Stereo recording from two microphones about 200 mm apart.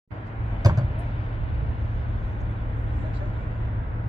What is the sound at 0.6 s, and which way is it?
Vehicle, 20° right (ahead or behind).